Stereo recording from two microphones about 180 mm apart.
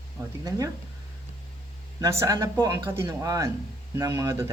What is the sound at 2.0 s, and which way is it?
Speech, 15° right (ahead or behind).